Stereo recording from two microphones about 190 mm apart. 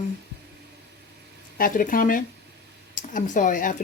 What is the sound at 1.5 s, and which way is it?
A woman's voice, 45° left (ahead or behind).